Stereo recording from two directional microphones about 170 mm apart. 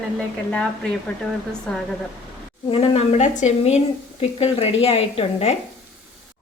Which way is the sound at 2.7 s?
35° left (ahead or behind).